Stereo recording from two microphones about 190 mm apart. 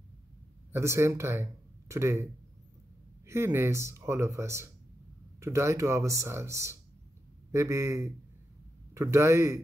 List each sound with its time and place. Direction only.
0.7 s speech: 15° right (ahead or behind)
3.3 s speech: 10° right (ahead or behind)